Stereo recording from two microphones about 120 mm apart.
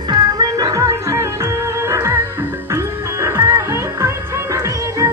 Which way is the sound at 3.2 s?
25° right (ahead or behind).